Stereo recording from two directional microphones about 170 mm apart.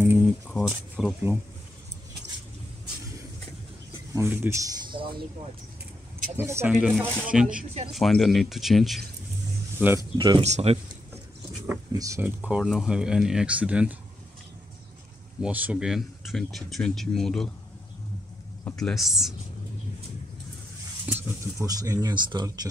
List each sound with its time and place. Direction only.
0.0 s a sound: 10° right (ahead or behind)
0.5 s speech: 5° left (ahead or behind)
0.9 s speech: 10° right (ahead or behind)
4.1 s speech: 15° right (ahead or behind)
6.3 s speech: 15° right (ahead or behind)
9.8 s speech: 10° right (ahead or behind)
10.1 s speech: 30° right (ahead or behind)
10.4 s speech: 40° right (ahead or behind)
11.9 s speech: 20° right (ahead or behind)
12.4 s speech: 5° right (ahead or behind)
15.4 s speech: 10° right (ahead or behind)
18.8 s speech: centre (ahead or behind)
21.0 s speech: 10° right (ahead or behind)